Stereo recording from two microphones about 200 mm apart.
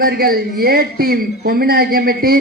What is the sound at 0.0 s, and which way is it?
Speech, 50° right (ahead or behind).